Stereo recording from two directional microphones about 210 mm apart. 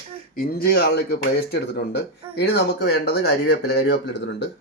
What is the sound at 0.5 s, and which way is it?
Speech, 50° left (ahead or behind).